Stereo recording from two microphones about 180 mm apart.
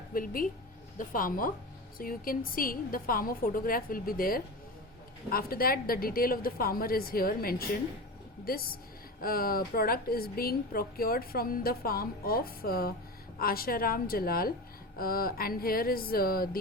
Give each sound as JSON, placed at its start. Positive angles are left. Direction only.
{"t": 0.1, "sound": "a woman's voice", "side_deg": 50}
{"t": 9.2, "sound": "a woman's voice", "side_deg": 55}